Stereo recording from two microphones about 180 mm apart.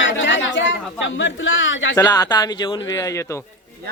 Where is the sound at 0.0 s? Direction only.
90° left.